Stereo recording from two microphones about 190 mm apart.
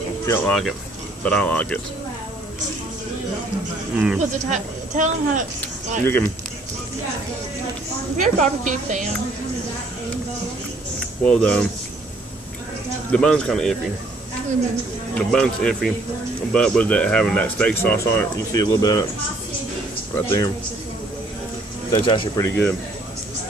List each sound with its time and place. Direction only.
0.3 s speech: 5° left (ahead or behind)
3.9 s speech: 5° right (ahead or behind)
4.2 s speech: 40° right (ahead or behind)
8.2 s speech: 40° right (ahead or behind)
11.2 s speech: 5° left (ahead or behind)
13.1 s speech: 5° left (ahead or behind)
15.1 s speech: 5° left (ahead or behind); by 19.0 s 20° left (ahead or behind)
20.2 s speech: 15° left (ahead or behind)
21.9 s speech: 25° left (ahead or behind)